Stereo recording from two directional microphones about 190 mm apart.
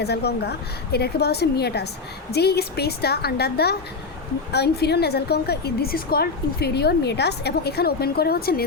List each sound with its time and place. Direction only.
0.0 s a woman's voice: 60° left (ahead or behind)